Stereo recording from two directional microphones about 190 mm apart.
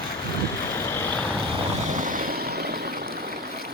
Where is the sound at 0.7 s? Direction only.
15° left (ahead or behind).